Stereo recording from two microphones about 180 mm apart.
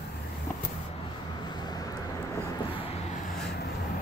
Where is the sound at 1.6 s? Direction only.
20° left (ahead or behind).